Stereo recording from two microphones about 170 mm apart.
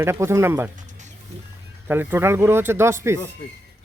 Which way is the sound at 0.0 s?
15° right (ahead or behind).